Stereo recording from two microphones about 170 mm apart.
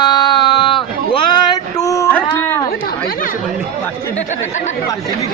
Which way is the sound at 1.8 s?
20° left (ahead or behind).